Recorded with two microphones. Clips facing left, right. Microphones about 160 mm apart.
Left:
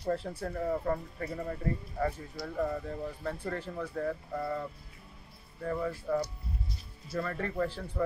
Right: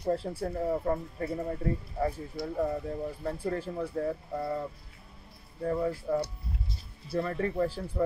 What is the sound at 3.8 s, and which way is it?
Speech, 20° right (ahead or behind).